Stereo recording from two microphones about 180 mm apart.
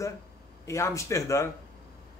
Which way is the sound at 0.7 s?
15° left (ahead or behind).